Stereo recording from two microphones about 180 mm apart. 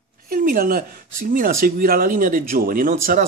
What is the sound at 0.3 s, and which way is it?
A woman's voice, 55° right (ahead or behind).